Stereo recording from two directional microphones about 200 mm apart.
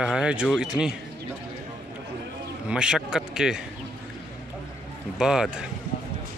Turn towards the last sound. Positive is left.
turn(degrees=-5)  # may be behind; listen again after turning